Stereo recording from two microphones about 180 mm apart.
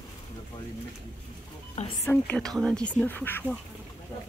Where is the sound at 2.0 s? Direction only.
10° left (ahead or behind).